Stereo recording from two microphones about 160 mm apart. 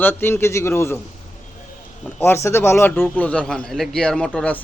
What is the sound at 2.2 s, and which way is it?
A man's voice, 15° left (ahead or behind).